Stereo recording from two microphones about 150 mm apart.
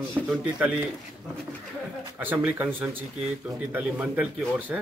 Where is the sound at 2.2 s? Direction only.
10° right (ahead or behind).